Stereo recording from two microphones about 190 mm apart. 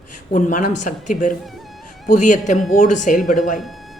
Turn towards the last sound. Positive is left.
turn(degrees=45)  # may be behind; listen again after turning